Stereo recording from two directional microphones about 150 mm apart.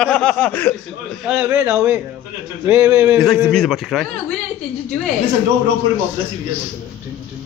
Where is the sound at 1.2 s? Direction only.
15° right (ahead or behind).